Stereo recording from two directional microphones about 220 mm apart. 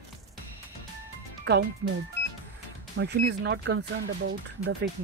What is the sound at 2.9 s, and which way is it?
Speech, 50° right (ahead or behind).